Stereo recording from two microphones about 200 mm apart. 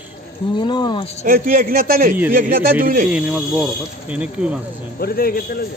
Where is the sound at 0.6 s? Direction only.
20° left (ahead or behind).